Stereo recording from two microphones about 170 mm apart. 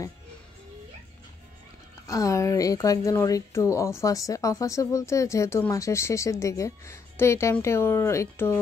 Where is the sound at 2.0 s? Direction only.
20° left (ahead or behind).